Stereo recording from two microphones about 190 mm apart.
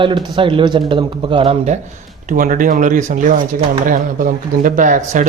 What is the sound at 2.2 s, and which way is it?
A man's voice, 45° right (ahead or behind).